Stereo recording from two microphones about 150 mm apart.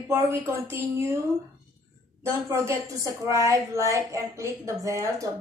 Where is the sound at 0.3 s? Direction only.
20° right (ahead or behind).